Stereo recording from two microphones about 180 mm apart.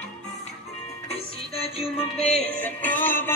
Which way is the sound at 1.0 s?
35° left (ahead or behind).